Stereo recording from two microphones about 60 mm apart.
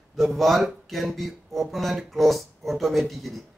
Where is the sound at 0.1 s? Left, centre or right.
Centre.